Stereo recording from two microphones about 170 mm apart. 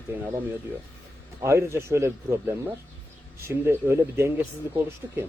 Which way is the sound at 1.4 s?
15° right (ahead or behind).